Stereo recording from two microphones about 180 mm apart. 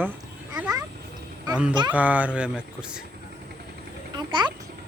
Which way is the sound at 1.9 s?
10° right (ahead or behind).